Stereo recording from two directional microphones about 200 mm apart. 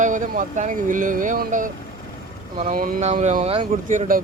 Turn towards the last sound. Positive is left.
turn(degrees=-30)  # may be behind; listen again after turning